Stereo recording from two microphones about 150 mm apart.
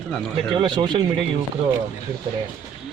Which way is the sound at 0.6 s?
30° right (ahead or behind).